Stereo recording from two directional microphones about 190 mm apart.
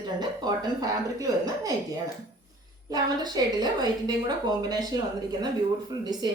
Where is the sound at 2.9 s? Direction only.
20° right (ahead or behind).